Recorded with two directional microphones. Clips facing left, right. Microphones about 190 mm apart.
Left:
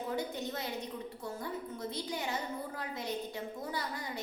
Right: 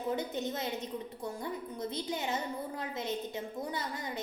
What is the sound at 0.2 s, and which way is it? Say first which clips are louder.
A woman's voice: right 2 dB; 20° right (ahead or behind).